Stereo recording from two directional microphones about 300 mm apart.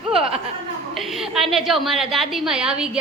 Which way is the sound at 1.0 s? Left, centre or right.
Centre.